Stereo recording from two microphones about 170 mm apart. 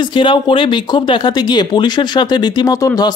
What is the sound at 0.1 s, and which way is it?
Speech, 30° left (ahead or behind).